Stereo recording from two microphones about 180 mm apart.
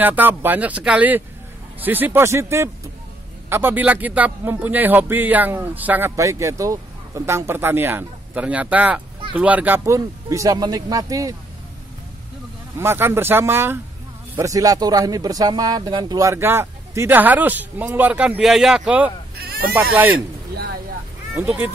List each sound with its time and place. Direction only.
0.0 s speech: 10° right (ahead or behind)
12.7 s speech: 15° right (ahead or behind)
19.3 s a sound: 60° right (ahead or behind)
19.7 s speech: 10° right (ahead or behind)
21.4 s speech: 10° right (ahead or behind)